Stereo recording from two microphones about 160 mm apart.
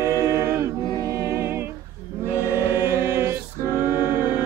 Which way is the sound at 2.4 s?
15° right (ahead or behind).